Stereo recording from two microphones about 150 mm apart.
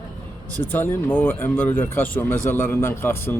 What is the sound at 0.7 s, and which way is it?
Speech, 15° left (ahead or behind).